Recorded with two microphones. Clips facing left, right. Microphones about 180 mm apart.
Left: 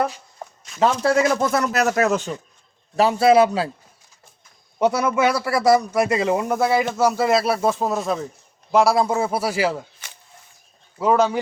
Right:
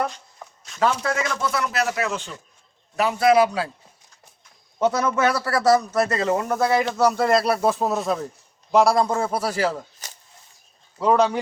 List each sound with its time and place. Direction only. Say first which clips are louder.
0.7 s a sound: left 3 dB; centre (ahead or behind)
1.0 s speech: left 7 dB; 40° left (ahead or behind)
2.9 s a man's voice: left 3 dB; 30° left (ahead or behind)
4.8 s a man's voice: left 2 dB; 10° left (ahead or behind)
10.0 s a sound: right 1 dB; 40° right (ahead or behind)
10.9 s speech: left 1 dB; 5° left (ahead or behind)